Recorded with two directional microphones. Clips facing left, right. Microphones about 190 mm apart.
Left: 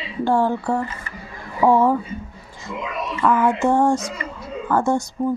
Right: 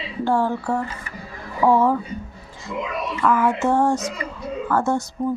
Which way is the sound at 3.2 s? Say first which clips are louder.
Left 2 dB; 20° left (ahead or behind).